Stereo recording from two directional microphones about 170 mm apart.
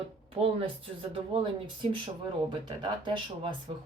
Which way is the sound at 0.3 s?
35° right (ahead or behind).